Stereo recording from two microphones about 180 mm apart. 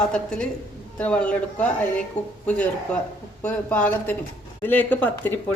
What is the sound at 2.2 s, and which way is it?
Speech, 40° left (ahead or behind).